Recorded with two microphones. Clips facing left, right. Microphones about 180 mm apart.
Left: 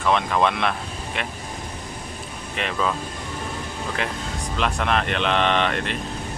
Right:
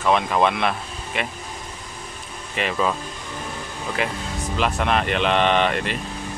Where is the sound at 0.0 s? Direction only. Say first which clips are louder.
Right 1 dB; 5° right (ahead or behind).